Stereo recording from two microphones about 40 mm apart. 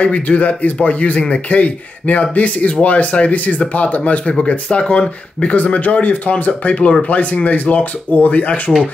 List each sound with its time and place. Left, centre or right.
0.0 s speech: left